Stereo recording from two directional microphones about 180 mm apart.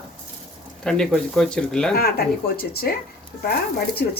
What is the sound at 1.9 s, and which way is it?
Speech, 60° left (ahead or behind).